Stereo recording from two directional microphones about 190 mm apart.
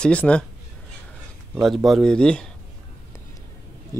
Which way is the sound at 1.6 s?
Centre (ahead or behind).